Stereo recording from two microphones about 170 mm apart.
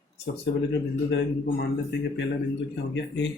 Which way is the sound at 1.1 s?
75° left (ahead or behind).